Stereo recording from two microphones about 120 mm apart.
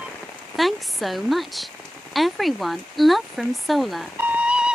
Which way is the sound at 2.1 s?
Centre (ahead or behind).